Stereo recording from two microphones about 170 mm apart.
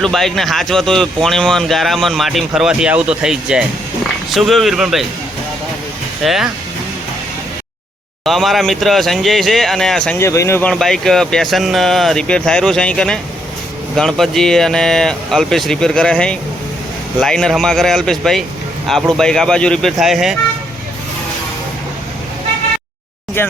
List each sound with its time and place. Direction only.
0.0 s speech: centre (ahead or behind)
6.2 s speech: centre (ahead or behind)
8.2 s speech: centre (ahead or behind)
10.2 s speech: 15° left (ahead or behind)
10.7 s speech: 5° left (ahead or behind)